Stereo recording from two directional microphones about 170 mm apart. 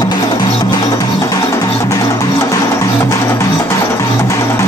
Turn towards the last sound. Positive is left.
turn(degrees=15)  # may be behind; listen again after turning